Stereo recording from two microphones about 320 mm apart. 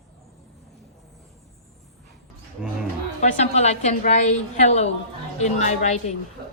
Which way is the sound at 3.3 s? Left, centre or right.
Centre.